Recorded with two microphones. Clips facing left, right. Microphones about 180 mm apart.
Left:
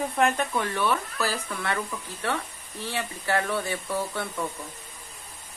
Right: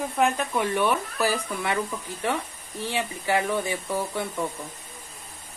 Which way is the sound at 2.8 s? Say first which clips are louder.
Right 3 dB; 15° right (ahead or behind).